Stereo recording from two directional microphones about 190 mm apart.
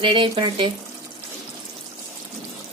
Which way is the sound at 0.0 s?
25° right (ahead or behind).